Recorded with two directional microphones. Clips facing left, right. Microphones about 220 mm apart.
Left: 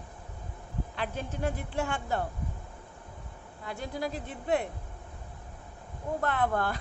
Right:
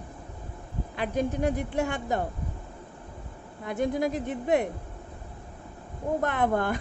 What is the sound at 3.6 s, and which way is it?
Speech, 20° right (ahead or behind).